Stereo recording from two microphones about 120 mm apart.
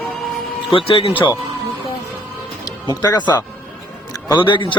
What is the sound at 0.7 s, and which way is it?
Speech, 50° left (ahead or behind).